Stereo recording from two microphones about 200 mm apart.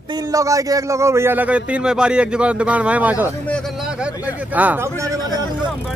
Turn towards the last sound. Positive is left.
turn(degrees=-15)  # may be behind; listen again after turning